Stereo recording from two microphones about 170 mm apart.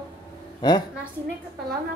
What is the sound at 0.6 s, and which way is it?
Speech, 25° left (ahead or behind).